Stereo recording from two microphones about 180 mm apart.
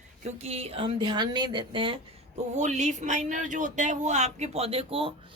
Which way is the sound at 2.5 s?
40° right (ahead or behind).